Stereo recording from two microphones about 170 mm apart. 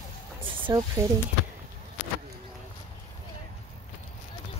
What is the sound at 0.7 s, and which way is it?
Speech, 20° right (ahead or behind).